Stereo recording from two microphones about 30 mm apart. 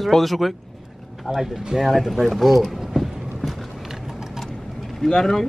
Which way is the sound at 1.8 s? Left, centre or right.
Centre.